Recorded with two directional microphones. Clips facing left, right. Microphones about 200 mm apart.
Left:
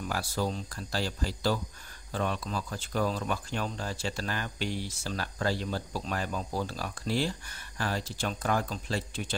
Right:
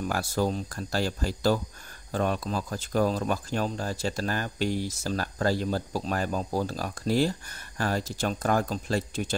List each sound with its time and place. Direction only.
0.0 s speech: 45° right (ahead or behind)